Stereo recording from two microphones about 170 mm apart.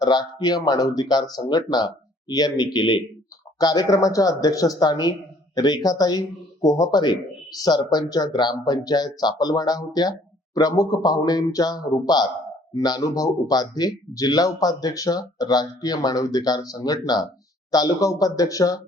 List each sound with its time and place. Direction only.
0.0 s speech: 25° left (ahead or behind)